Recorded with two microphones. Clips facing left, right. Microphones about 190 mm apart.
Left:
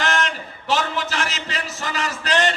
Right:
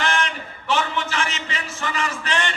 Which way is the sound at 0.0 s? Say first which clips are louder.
Left 1 dB; 40° left (ahead or behind).